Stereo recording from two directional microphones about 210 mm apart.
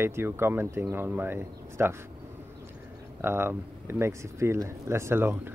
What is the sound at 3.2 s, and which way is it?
Speech, 10° right (ahead or behind).